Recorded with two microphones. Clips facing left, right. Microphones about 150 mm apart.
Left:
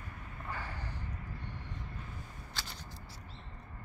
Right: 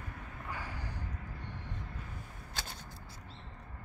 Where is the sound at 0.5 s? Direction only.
10° right (ahead or behind).